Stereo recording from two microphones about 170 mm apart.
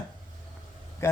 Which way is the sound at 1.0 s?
15° left (ahead or behind).